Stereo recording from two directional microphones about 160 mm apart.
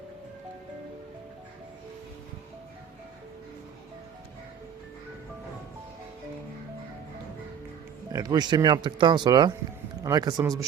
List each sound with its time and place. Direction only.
8.1 s speech: 25° right (ahead or behind)